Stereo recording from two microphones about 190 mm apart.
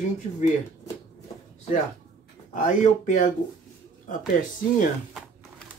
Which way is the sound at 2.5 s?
40° left (ahead or behind).